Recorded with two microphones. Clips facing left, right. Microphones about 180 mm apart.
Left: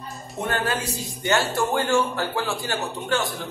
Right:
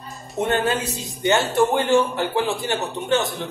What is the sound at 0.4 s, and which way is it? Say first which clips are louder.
A man's voice: right 5 dB; 20° right (ahead or behind).